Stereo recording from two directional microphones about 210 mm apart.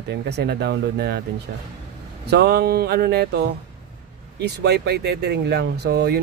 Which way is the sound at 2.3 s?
50° right (ahead or behind).